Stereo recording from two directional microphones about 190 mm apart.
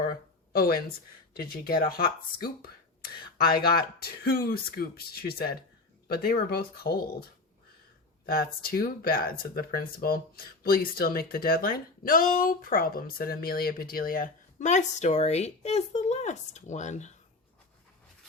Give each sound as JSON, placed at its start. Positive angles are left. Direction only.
{"t": 0.0, "sound": "a sound", "side_deg": 50}
{"t": 1.4, "sound": "speech", "side_deg": 50}
{"t": 8.3, "sound": "speech", "side_deg": 50}